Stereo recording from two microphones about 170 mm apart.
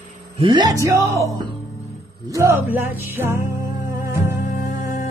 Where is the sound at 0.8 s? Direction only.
15° right (ahead or behind).